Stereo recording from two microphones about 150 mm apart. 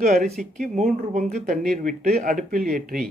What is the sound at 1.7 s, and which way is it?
Speech, 65° right (ahead or behind).